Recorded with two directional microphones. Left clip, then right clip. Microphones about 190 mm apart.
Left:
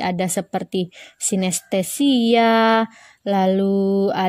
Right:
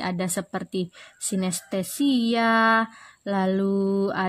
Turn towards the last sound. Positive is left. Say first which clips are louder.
# left 6 dB
turn(degrees=25)  # may be behind; listen again after turning